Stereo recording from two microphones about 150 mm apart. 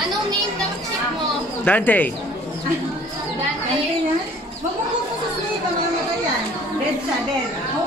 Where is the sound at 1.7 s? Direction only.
10° left (ahead or behind).